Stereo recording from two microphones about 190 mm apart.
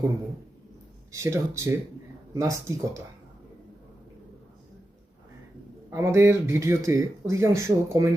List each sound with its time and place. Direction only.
1.1 s speech: 15° right (ahead or behind)
5.9 s speech: 15° right (ahead or behind)